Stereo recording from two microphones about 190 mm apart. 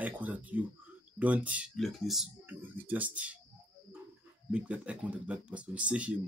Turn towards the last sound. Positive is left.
turn(degrees=-5)  # may be behind; listen again after turning